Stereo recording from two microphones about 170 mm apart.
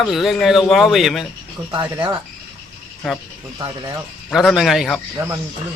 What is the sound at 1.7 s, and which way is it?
Speech, 15° right (ahead or behind).